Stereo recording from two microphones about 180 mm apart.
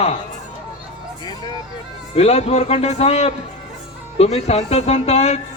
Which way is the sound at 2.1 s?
35° left (ahead or behind).